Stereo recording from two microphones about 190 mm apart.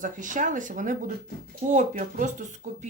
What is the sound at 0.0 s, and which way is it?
Speech, 45° right (ahead or behind).